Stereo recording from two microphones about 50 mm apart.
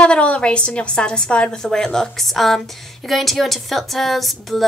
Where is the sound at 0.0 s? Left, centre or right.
Left.